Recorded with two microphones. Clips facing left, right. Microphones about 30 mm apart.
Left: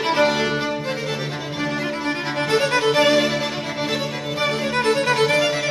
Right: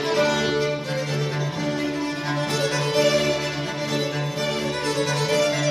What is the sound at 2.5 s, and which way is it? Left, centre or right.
Music, left.